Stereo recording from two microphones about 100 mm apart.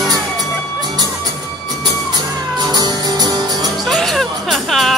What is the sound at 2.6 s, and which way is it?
Music, 45° right (ahead or behind).